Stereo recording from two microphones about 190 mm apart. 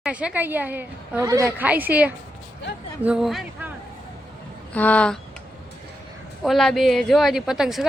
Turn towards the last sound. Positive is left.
turn(degrees=0)  # may be behind; listen again after turning